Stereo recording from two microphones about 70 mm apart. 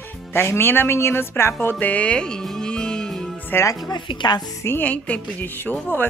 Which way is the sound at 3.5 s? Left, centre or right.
Left.